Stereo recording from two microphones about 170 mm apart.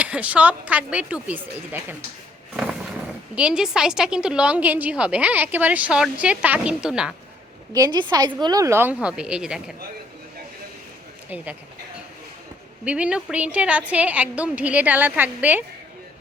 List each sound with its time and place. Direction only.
0.0 s a woman's voice: 10° right (ahead or behind)
3.3 s a woman's voice: 5° right (ahead or behind)
7.7 s a woman's voice: 25° right (ahead or behind); by 9.7 s 5° right (ahead or behind)
12.8 s a woman's voice: 10° right (ahead or behind)